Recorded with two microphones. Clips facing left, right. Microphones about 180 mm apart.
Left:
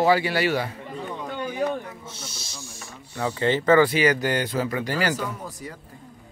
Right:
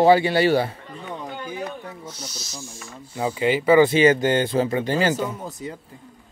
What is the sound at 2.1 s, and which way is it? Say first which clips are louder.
Speech: right 3 dB; 25° left (ahead or behind).